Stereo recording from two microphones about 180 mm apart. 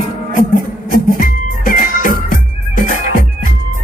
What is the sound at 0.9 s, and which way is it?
Music, 55° left (ahead or behind).